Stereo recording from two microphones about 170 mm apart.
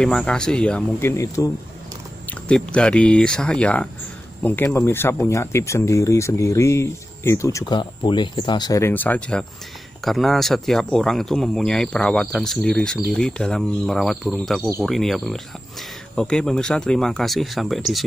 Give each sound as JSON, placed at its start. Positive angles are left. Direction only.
{"t": 0.0, "sound": "speech", "side_deg": 5}
{"t": 2.2, "sound": "speech", "side_deg": 5}